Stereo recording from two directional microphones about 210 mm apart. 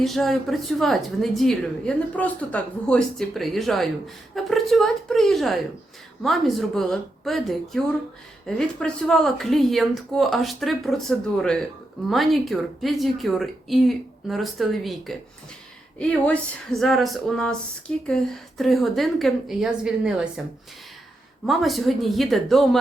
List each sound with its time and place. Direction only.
0.0 s speech: centre (ahead or behind)
21.4 s speech: centre (ahead or behind)